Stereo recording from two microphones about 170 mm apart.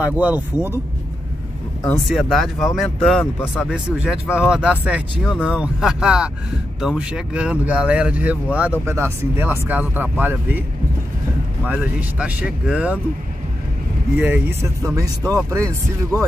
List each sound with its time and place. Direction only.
0.0 s speech: 10° right (ahead or behind)
2.0 s speech: centre (ahead or behind)
11.6 s speech: 5° right (ahead or behind)
14.1 s speech: 10° right (ahead or behind)